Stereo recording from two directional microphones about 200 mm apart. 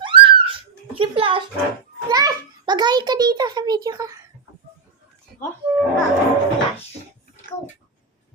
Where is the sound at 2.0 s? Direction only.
20° right (ahead or behind).